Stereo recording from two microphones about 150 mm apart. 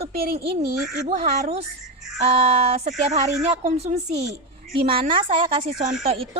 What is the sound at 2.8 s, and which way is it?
Speech, 45° right (ahead or behind).